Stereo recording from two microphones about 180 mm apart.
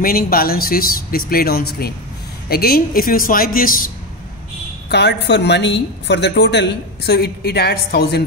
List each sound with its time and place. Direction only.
0.0 s speech: 55° left (ahead or behind)
4.8 s a woman's voice: 70° left (ahead or behind)